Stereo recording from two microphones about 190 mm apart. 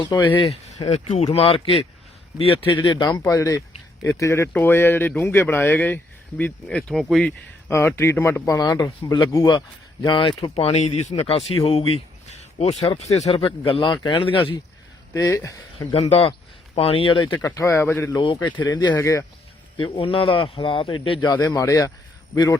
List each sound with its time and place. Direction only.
0.0 s speech: 25° left (ahead or behind); by 7.3 s centre (ahead or behind)
7.7 s speech: 15° left (ahead or behind); by 14.6 s 30° left (ahead or behind)
15.1 s speech: 15° left (ahead or behind)
15.9 s speech: 30° left (ahead or behind)
17.4 s speech: 15° left (ahead or behind)
18.2 s speech: 25° left (ahead or behind)
19.8 s speech: 30° left (ahead or behind)